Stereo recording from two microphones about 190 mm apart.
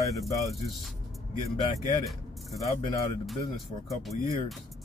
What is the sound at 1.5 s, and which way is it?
Speech, 25° left (ahead or behind).